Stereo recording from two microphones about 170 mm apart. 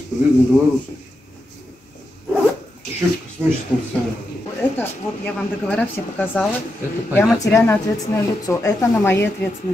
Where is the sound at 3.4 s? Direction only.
10° right (ahead or behind).